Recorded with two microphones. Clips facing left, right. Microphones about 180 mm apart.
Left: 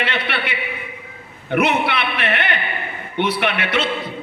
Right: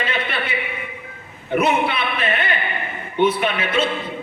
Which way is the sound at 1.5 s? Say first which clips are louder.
Even; 75° left (ahead or behind).